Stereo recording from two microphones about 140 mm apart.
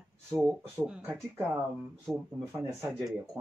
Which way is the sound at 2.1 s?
15° right (ahead or behind).